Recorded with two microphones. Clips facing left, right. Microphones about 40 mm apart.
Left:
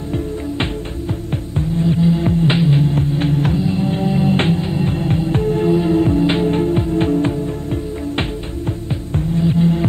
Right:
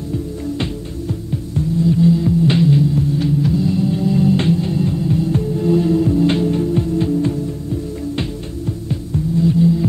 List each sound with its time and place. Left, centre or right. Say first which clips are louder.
1.8 s music: right 2 dB; left
2.8 s music: even; left
3.5 s music: right 1 dB; left
4.9 s music: even; left
5.7 s music: right 2 dB; left
9.1 s throbbing: right 1 dB; left